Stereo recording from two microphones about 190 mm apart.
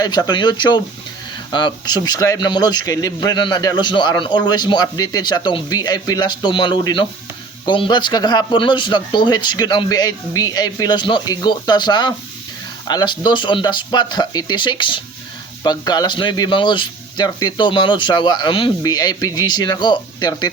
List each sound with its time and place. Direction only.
0.0 s speech: 20° left (ahead or behind)